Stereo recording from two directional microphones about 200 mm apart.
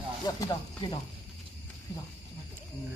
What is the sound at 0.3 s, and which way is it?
Speech, 20° left (ahead or behind).